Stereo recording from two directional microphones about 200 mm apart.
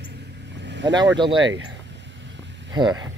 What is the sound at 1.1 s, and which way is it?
Speech, 25° right (ahead or behind).